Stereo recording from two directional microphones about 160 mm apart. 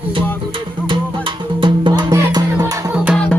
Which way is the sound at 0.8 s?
30° right (ahead or behind).